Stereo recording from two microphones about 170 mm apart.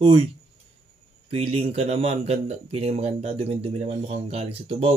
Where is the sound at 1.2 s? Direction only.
35° right (ahead or behind).